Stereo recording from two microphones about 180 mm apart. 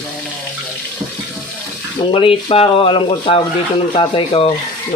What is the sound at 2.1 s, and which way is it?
Speech, 30° left (ahead or behind).